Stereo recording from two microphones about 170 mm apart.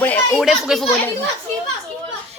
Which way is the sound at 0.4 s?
Centre (ahead or behind).